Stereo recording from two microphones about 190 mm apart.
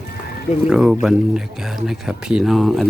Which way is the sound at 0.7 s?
5° right (ahead or behind).